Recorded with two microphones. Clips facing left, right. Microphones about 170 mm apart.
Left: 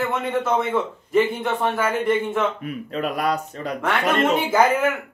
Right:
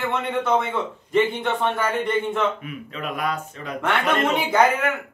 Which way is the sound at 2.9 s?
35° left (ahead or behind).